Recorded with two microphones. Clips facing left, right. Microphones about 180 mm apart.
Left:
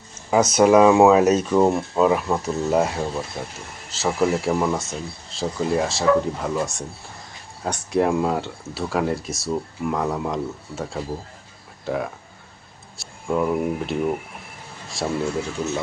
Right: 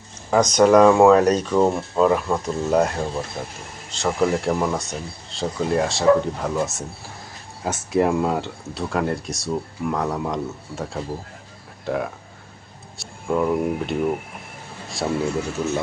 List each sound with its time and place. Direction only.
0.1 s speech: 5° left (ahead or behind)
15.0 s speech: 5° left (ahead or behind)